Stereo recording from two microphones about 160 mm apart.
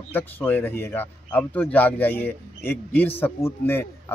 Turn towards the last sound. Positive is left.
turn(degrees=15)  # may be behind; listen again after turning